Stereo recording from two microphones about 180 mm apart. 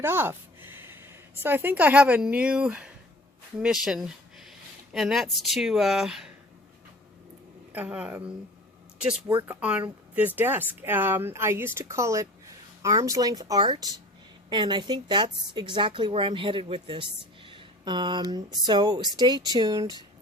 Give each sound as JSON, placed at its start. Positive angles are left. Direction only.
{"t": 0.0, "sound": "a woman's voice", "side_deg": -10}
{"t": 7.7, "sound": "a woman's voice", "side_deg": -10}